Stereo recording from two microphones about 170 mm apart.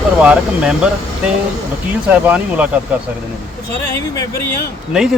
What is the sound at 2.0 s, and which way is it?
Speech, 10° right (ahead or behind).